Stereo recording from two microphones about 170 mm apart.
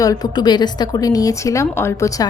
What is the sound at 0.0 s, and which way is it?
A woman's voice, 20° left (ahead or behind).